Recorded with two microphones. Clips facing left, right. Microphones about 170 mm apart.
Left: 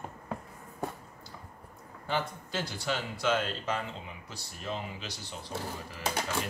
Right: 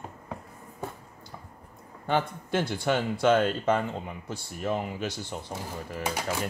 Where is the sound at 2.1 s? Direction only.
55° right (ahead or behind).